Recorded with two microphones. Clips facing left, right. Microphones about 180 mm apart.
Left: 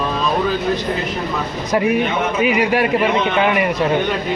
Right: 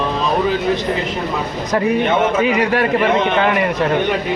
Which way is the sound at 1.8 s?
15° left (ahead or behind).